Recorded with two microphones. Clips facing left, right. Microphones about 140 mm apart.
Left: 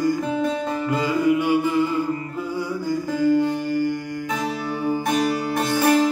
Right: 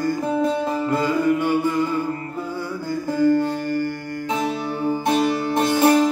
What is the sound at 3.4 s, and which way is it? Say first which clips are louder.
Music: left 1 dB; 15° left (ahead or behind).